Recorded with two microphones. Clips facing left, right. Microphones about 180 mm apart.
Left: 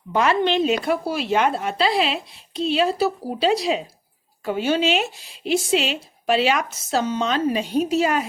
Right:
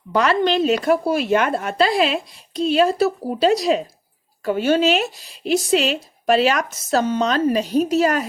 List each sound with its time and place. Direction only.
0.1 s speech: 40° right (ahead or behind)